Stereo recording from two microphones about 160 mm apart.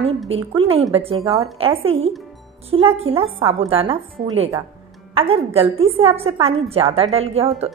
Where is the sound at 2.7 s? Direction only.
35° right (ahead or behind).